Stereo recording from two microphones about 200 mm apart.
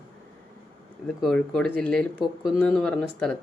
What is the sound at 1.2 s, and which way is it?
Speech, 5° left (ahead or behind).